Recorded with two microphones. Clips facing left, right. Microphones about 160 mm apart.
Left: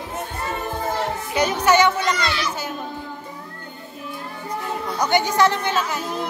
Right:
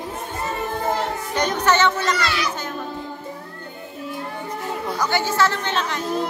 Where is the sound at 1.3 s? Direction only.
10° left (ahead or behind).